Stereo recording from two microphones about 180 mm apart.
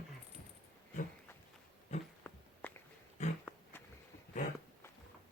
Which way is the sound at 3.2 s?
40° left (ahead or behind).